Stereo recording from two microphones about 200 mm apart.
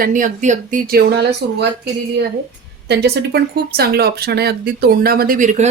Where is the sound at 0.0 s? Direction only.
40° right (ahead or behind).